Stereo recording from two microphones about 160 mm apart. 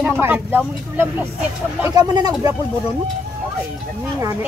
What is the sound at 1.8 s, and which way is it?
Speech, 25° right (ahead or behind).